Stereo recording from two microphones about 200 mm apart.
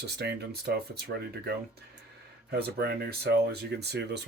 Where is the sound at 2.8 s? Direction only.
50° right (ahead or behind).